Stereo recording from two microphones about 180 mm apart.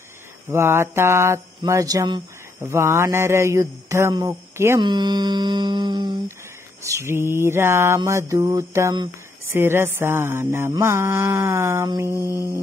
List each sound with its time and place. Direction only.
0.5 s mantra: 15° right (ahead or behind)
4.3 s speech: 15° right (ahead or behind)
4.8 s music: 25° right (ahead or behind)
6.8 s mantra: 15° right (ahead or behind)